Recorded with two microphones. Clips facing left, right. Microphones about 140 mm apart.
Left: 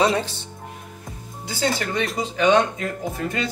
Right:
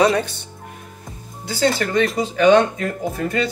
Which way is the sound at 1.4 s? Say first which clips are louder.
Right 5 dB; 15° left (ahead or behind).